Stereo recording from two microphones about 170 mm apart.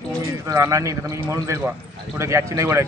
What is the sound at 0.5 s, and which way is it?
A man's voice, 20° right (ahead or behind).